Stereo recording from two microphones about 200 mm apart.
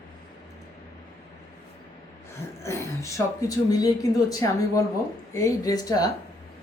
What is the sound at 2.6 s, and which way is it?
Speech, 15° left (ahead or behind).